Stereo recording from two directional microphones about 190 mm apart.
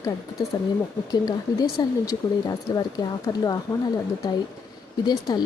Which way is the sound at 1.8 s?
20° left (ahead or behind).